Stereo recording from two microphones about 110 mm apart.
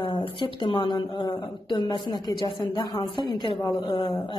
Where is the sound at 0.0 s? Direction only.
50° left (ahead or behind).